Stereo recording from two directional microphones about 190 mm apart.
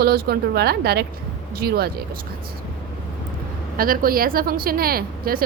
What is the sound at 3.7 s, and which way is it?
A woman's voice, 50° right (ahead or behind).